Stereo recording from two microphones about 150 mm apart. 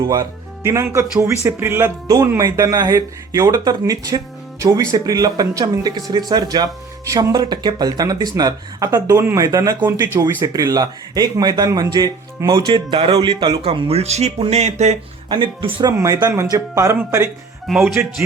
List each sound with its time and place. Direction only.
0.6 s speech: 20° right (ahead or behind); by 14.9 s 45° right (ahead or behind)
15.3 s speech: 35° right (ahead or behind)
15.9 s speech: 20° right (ahead or behind)
17.7 s speech: centre (ahead or behind)